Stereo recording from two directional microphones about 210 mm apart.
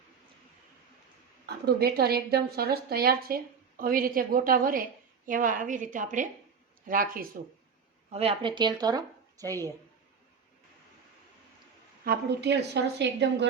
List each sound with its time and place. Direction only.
1.5 s a woman's voice: 50° right (ahead or behind)
8.1 s speech: 25° right (ahead or behind)
12.0 s a woman's voice: 50° right (ahead or behind)